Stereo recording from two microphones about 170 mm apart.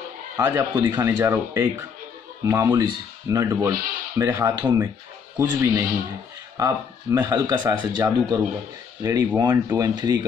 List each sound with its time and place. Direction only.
0.4 s speech: 15° right (ahead or behind)